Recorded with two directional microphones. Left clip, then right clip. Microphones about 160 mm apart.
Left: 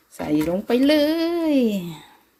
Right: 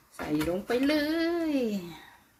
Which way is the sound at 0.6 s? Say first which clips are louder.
Left 11 dB; 50° left (ahead or behind).